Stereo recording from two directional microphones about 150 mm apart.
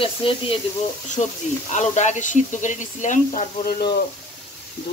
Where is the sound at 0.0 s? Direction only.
35° left (ahead or behind).